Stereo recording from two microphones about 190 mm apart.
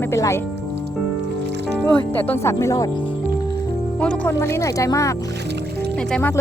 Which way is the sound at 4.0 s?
5° left (ahead or behind).